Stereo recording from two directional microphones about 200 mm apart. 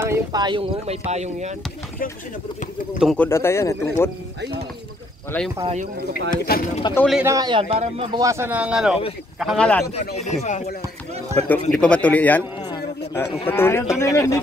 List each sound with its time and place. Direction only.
0.0 s speech: 15° right (ahead or behind); by 1.5 s 35° right (ahead or behind)
3.0 s speech: centre (ahead or behind)
3.3 s speech: 15° left (ahead or behind)
5.6 s speech: 30° right (ahead or behind)
6.5 s speech: 50° left (ahead or behind)
7.0 s speech: centre (ahead or behind)
7.2 s speech: 20° right (ahead or behind)
8.2 s speech: 15° right (ahead or behind); by 9.8 s 5° left (ahead or behind)
10.4 s speech: 35° left (ahead or behind)
11.3 s speech: 10° left (ahead or behind)
12.6 s a sound: 15° left (ahead or behind)
13.5 s speech: 10° left (ahead or behind)